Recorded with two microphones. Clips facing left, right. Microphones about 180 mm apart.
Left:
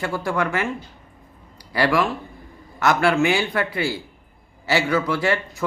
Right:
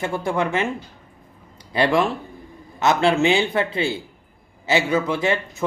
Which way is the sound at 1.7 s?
25° right (ahead or behind).